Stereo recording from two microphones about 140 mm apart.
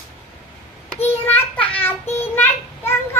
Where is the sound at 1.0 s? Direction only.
15° left (ahead or behind).